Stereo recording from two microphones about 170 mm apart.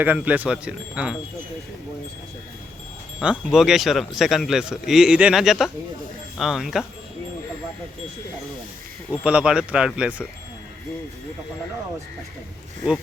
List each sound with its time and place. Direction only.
0.0 s speech: 10° right (ahead or behind)
3.2 s a man's voice: centre (ahead or behind)
9.2 s speech: 5° right (ahead or behind)